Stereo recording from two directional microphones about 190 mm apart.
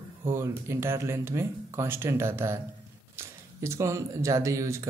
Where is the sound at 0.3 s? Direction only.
15° right (ahead or behind).